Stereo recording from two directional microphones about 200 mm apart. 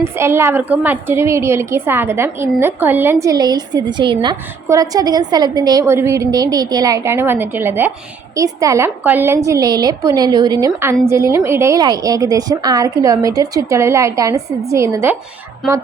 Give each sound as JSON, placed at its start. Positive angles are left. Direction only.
{"t": 0.0, "sound": "a woman's voice", "side_deg": -15}